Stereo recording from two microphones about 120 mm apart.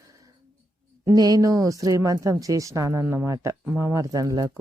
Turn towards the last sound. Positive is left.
turn(degrees=-35)  # may be behind; listen again after turning